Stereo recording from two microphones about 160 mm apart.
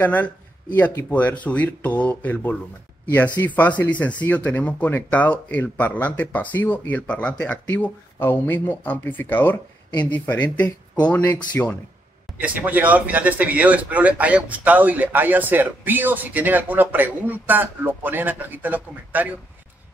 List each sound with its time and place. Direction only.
0.0 s speech: 10° left (ahead or behind)
12.4 s speech: 10° right (ahead or behind)